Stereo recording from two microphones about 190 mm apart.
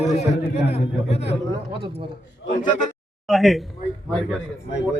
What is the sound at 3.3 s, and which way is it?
Speech, centre (ahead or behind).